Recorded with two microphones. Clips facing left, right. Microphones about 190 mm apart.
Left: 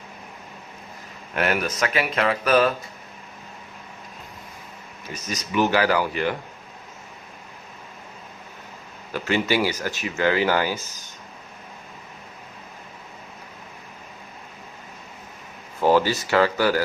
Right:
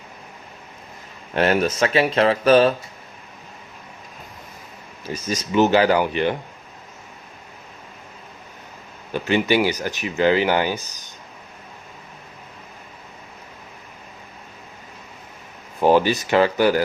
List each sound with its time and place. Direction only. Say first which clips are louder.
1.3 s speech: right 5 dB; 30° right (ahead or behind)
5.0 s speech: right 6 dB; 30° right (ahead or behind)
9.1 s speech: right 3 dB; 20° right (ahead or behind)
15.8 s speech: right 3 dB; 15° right (ahead or behind)